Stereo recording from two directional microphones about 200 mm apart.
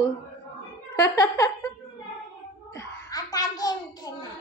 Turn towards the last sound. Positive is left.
turn(degrees=20)  # may be behind; listen again after turning